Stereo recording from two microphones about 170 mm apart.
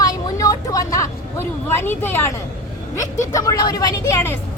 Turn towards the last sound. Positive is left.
turn(degrees=15)  # may be behind; listen again after turning